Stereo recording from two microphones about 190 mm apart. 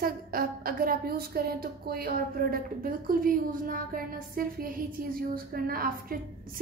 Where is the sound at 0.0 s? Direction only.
50° right (ahead or behind).